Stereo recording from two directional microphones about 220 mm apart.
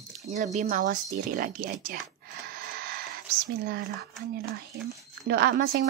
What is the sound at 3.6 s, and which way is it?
Speech, 40° right (ahead or behind).